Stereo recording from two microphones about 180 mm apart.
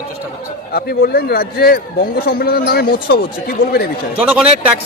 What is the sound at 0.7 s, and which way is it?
A man's voice, 60° left (ahead or behind).